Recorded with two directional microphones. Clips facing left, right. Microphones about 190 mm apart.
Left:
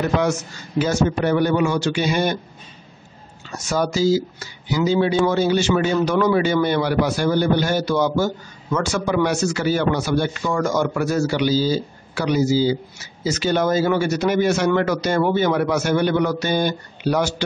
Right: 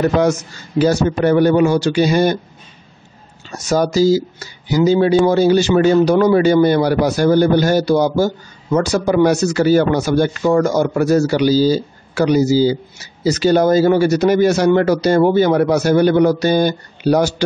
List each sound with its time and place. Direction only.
0.2 s speech: 40° right (ahead or behind)
3.5 s speech: 40° right (ahead or behind)